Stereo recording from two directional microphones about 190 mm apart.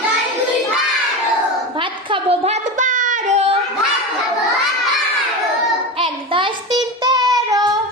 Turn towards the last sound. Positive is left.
turn(degrees=-20)  # may be behind; listen again after turning